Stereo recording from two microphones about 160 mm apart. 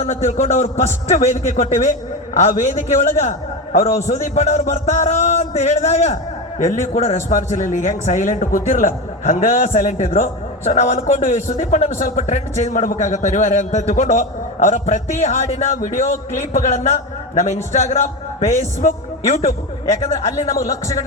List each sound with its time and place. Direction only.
0.0 s a man's voice: 45° left (ahead or behind)
20.5 s a man's voice: 20° left (ahead or behind)